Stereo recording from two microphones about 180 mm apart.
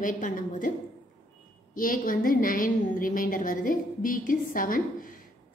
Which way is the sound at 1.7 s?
50° left (ahead or behind).